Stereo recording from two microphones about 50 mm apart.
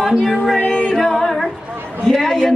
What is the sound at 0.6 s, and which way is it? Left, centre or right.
Music, centre.